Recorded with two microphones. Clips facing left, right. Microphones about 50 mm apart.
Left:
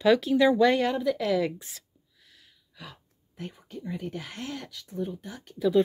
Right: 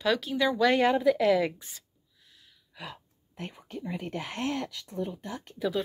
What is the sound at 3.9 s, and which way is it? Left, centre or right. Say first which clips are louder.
Speech: even; right.